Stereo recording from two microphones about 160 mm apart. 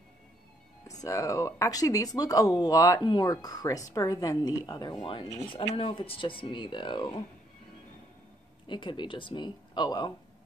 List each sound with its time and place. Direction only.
1.0 s speech: 20° left (ahead or behind)
8.6 s speech: 30° left (ahead or behind)